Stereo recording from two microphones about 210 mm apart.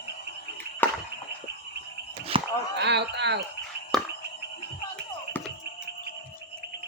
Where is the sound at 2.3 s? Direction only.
25° right (ahead or behind).